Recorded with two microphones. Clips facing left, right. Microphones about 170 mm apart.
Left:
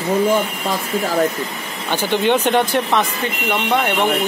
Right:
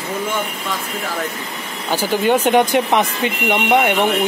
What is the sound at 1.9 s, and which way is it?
Speech, 10° right (ahead or behind).